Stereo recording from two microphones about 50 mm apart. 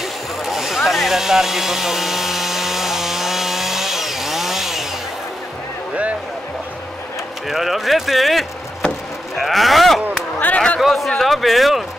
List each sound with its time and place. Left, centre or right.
0.0 s a sound: centre
7.4 s speech: centre
8.8 s vehicle: left
9.3 s speech: centre
10.4 s a sound: left
10.8 s speech: centre